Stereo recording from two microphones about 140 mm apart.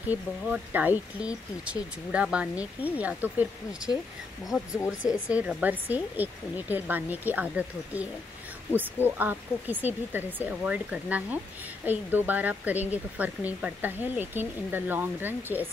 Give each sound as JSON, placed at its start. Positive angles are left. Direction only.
{"t": 0.1, "sound": "speech", "side_deg": -10}
{"t": 4.7, "sound": "speech", "side_deg": 20}
{"t": 5.6, "sound": "speech", "side_deg": -10}